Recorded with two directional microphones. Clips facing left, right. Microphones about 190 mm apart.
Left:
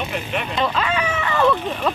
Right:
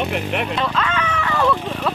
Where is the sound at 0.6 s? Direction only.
15° left (ahead or behind).